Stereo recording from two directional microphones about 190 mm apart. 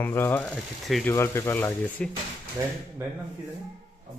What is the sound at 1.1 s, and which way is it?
Speech, 15° left (ahead or behind).